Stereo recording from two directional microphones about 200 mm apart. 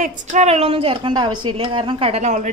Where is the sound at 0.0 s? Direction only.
40° right (ahead or behind).